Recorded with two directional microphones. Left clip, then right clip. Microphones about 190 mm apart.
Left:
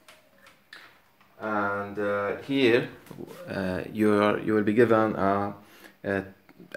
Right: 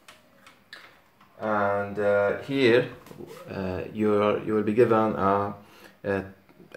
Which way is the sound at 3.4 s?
50° left (ahead or behind).